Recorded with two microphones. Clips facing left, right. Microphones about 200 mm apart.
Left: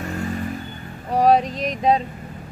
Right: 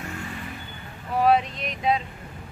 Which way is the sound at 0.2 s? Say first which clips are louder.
Left 9 dB; 40° left (ahead or behind).